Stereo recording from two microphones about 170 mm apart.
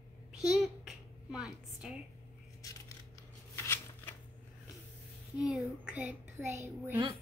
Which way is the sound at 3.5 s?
15° left (ahead or behind).